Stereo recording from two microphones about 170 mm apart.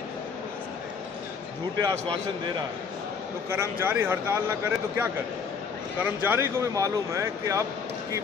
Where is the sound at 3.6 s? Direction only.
15° right (ahead or behind).